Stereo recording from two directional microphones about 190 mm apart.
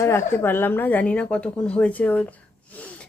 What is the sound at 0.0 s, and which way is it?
Speech, 15° left (ahead or behind).